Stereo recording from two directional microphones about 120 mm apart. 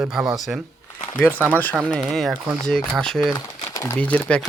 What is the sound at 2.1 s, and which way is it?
Speech, 5° left (ahead or behind).